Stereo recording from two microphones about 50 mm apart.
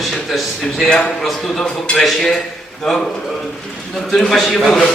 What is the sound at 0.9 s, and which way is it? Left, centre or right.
A man's voice, centre.